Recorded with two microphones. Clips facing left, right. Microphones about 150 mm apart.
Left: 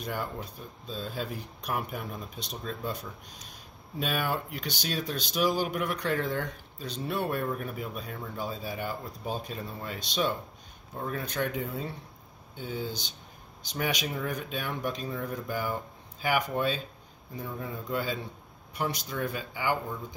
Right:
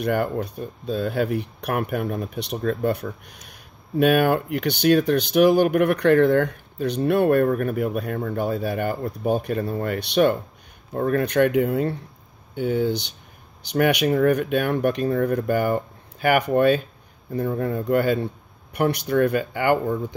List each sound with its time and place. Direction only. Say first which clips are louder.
0.0 s speech: right 12 dB; 70° right (ahead or behind)